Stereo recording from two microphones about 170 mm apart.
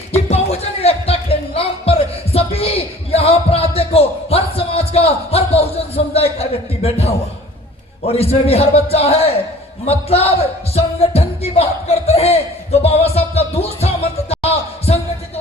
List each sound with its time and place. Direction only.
0.3 s music: 40° left (ahead or behind)
3.8 s a sound: 35° left (ahead or behind)
8.0 s a man's voice: 35° left (ahead or behind)
10.8 s music: 35° left (ahead or behind)